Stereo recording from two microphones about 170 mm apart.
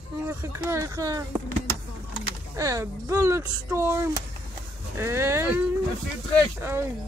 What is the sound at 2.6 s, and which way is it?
Speech, 20° right (ahead or behind).